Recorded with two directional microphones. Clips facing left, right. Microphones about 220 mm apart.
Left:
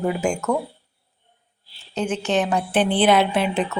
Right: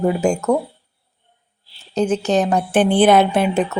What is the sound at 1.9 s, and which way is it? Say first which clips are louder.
A woman's voice: right 5 dB; 40° right (ahead or behind).